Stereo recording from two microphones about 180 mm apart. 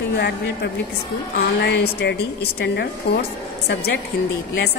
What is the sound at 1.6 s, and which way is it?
Speech, 65° left (ahead or behind).